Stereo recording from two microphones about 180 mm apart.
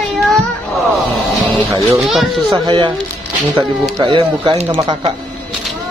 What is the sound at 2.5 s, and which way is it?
Speech, 25° right (ahead or behind).